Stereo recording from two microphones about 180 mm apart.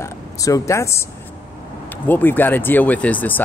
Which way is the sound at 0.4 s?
15° left (ahead or behind).